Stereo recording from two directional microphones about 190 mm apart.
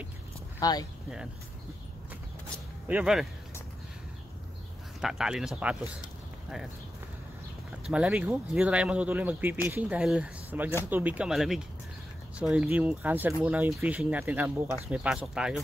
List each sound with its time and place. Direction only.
0.6 s speech: 20° left (ahead or behind)
2.9 s speech: 5° right (ahead or behind)
5.0 s speech: 5° right (ahead or behind)
7.8 s speech: 5° right (ahead or behind)